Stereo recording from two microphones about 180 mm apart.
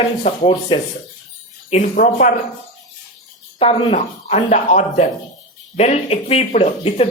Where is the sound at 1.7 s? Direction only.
45° left (ahead or behind).